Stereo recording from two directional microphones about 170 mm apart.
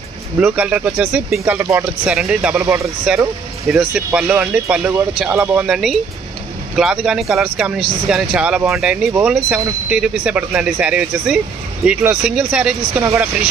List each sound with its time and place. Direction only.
0.4 s speech: 10° right (ahead or behind)
2.6 s speech: 15° right (ahead or behind)
3.7 s speech: 5° right (ahead or behind)
13.0 s speech: 15° right (ahead or behind)